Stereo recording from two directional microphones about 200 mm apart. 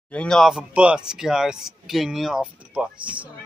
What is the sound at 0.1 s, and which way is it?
Speech, 5° left (ahead or behind).